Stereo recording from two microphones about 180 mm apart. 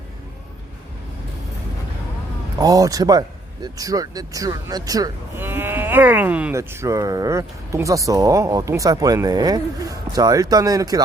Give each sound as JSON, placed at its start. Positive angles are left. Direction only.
{"t": 2.6, "sound": "speech", "side_deg": -20}